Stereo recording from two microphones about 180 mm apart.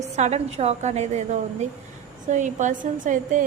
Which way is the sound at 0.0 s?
40° right (ahead or behind).